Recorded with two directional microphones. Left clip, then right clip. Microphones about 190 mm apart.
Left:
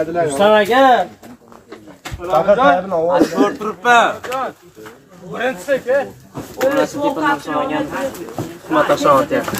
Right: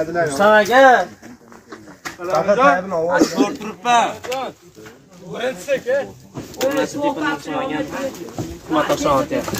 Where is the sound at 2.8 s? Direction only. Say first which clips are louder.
Left 2 dB; 5° left (ahead or behind).